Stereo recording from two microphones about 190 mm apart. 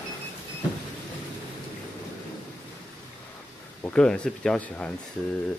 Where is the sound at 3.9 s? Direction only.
5° left (ahead or behind).